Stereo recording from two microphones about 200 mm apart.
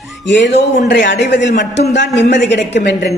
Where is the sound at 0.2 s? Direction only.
65° left (ahead or behind).